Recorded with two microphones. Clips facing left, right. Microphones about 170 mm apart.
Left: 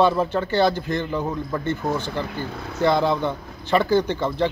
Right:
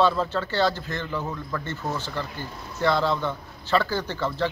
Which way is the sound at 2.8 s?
15° left (ahead or behind).